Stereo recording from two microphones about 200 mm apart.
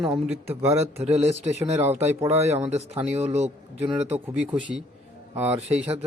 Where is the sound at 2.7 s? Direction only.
30° right (ahead or behind).